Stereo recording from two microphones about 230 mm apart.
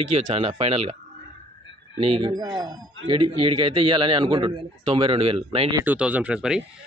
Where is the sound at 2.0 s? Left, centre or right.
Centre.